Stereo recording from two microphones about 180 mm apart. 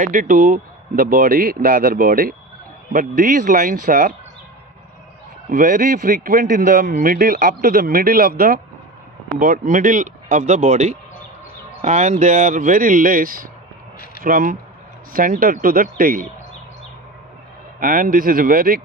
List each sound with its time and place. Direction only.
0.0 s a man's voice: 50° right (ahead or behind)
5.5 s a man's voice: 50° right (ahead or behind)
17.7 s a man's voice: 50° right (ahead or behind)